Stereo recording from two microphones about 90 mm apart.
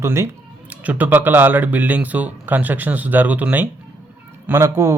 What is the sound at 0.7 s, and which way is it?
A man's voice, 15° right (ahead or behind).